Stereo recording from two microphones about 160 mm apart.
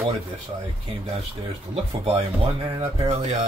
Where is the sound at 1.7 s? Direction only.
40° right (ahead or behind).